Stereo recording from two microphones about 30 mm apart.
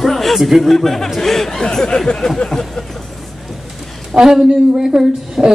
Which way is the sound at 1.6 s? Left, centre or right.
Left.